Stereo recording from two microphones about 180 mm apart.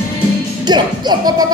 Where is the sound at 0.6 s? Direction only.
25° right (ahead or behind).